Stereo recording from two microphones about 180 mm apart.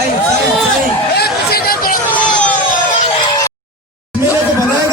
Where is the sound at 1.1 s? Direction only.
60° left (ahead or behind).